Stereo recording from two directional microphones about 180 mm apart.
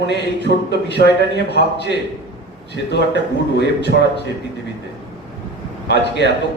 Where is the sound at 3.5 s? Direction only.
65° left (ahead or behind).